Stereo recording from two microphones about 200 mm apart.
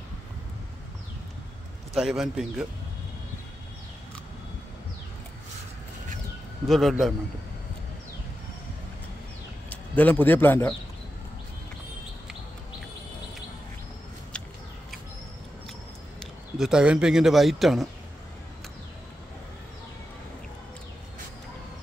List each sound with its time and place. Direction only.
2.0 s speech: centre (ahead or behind)
6.7 s speech: centre (ahead or behind)
9.7 s a man's voice: 10° left (ahead or behind)
16.2 s a man's voice: centre (ahead or behind)